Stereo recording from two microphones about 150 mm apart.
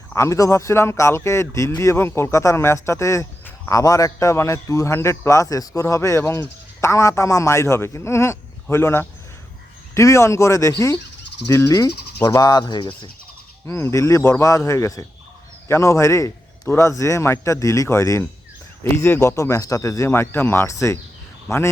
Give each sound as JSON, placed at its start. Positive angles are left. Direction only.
{"t": 0.1, "sound": "speech", "side_deg": 20}
{"t": 11.9, "sound": "a sound", "side_deg": 90}
{"t": 12.2, "sound": "speech", "side_deg": 25}
{"t": 13.7, "sound": "speech", "side_deg": 15}